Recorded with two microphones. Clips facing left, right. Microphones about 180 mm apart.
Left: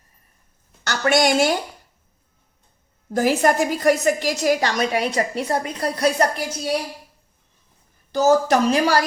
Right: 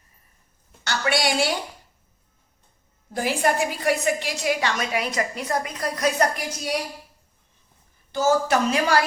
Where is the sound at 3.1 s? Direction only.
45° left (ahead or behind).